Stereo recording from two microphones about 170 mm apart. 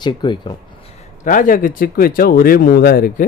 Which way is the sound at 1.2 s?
50° left (ahead or behind).